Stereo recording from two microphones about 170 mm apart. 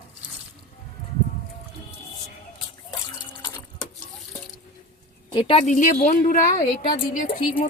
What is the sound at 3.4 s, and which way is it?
Water, 25° left (ahead or behind).